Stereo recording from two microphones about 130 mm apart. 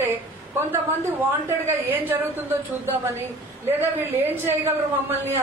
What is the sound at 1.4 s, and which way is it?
A woman's voice, 20° right (ahead or behind).